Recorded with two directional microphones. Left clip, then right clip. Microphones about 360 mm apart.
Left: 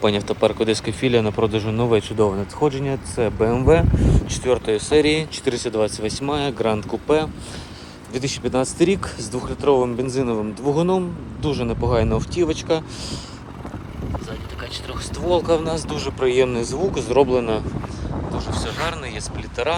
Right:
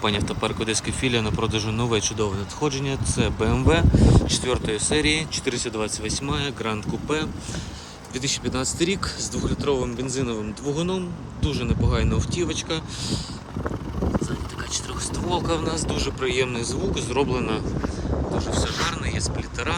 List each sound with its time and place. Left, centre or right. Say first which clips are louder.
0.0 s speech: left 6 dB; centre
10.3 s speech: left 6 dB; left
11.5 s speech: left 7 dB; centre
15.3 s speech: left 7 dB; centre